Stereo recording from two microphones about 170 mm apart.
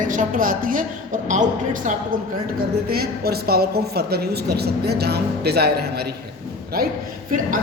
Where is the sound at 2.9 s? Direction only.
65° right (ahead or behind).